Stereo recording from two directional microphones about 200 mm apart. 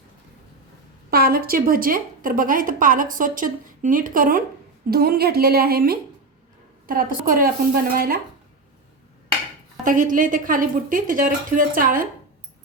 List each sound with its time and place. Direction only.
1.1 s a woman's voice: 50° right (ahead or behind)
9.8 s a woman's voice: 40° right (ahead or behind)